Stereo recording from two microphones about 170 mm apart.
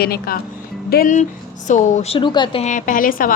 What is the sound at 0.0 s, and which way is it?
Speech, 70° left (ahead or behind).